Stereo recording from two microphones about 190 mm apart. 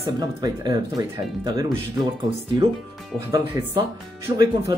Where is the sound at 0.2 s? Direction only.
20° right (ahead or behind).